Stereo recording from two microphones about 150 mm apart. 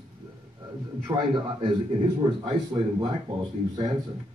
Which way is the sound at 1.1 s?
30° right (ahead or behind).